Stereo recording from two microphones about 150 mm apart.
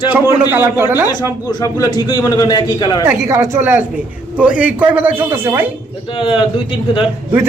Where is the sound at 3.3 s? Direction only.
15° right (ahead or behind).